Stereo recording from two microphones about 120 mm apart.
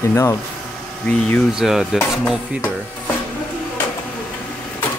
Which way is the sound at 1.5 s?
5° right (ahead or behind).